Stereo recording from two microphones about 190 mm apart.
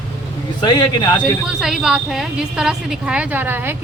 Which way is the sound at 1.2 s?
Centre (ahead or behind).